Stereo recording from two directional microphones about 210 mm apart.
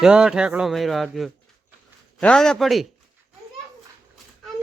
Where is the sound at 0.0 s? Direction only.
5° right (ahead or behind).